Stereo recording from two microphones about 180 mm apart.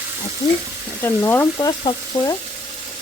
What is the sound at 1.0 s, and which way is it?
Frying, 15° left (ahead or behind).